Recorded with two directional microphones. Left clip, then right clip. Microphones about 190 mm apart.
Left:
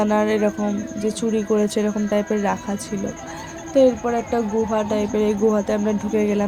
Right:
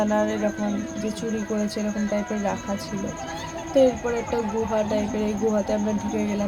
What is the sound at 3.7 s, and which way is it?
Speech, 25° left (ahead or behind).